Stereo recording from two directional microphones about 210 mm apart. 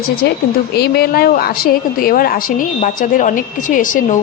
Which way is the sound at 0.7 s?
50° left (ahead or behind).